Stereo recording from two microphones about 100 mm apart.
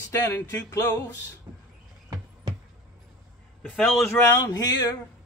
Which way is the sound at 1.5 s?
20° right (ahead or behind).